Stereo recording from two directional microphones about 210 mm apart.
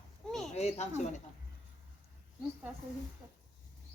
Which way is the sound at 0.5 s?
30° left (ahead or behind).